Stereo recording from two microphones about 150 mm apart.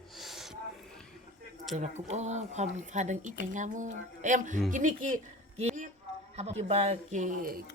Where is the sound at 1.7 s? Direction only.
50° right (ahead or behind); by 7.6 s 70° right (ahead or behind).